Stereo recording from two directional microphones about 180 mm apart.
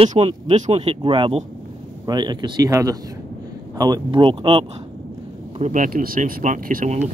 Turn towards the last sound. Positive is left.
turn(degrees=-40)  # may be behind; listen again after turning